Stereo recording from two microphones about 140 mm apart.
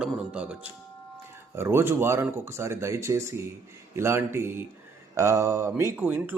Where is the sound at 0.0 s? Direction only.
5° right (ahead or behind).